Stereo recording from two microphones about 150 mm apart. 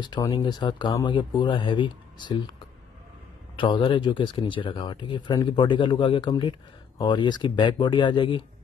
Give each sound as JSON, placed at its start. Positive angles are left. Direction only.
{"t": 0.0, "sound": "speech", "side_deg": 30}
{"t": 3.5, "sound": "speech", "side_deg": 35}